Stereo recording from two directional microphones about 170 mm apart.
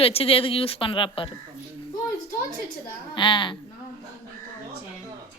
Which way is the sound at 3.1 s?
30° left (ahead or behind).